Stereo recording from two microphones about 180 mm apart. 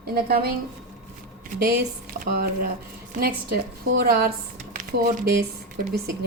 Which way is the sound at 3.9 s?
60° right (ahead or behind).